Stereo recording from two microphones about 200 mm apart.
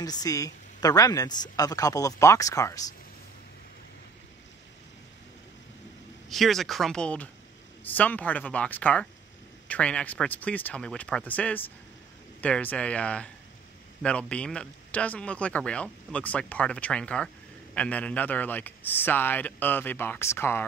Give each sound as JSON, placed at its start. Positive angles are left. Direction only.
{"t": 0.0, "sound": "a man's voice", "side_deg": 20}
{"t": 6.2, "sound": "a man's voice", "side_deg": 0}